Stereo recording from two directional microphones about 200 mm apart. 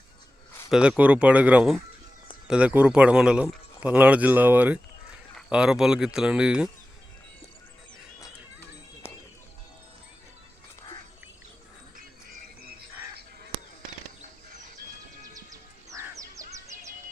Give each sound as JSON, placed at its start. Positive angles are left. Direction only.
{"t": 0.7, "sound": "a man's voice", "side_deg": -5}
{"t": 9.0, "sound": "music", "side_deg": 10}
{"t": 15.4, "sound": "music", "side_deg": -15}